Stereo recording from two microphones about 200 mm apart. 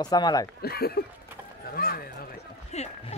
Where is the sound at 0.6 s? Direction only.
50° left (ahead or behind).